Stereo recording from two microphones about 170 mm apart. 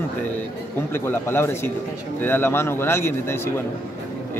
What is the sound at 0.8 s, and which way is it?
A man's voice, 15° left (ahead or behind).